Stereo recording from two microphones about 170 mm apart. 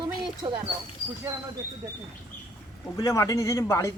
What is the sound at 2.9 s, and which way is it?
A man's voice, 20° left (ahead or behind).